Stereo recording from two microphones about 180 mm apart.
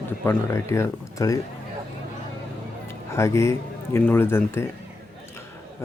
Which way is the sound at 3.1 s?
15° left (ahead or behind).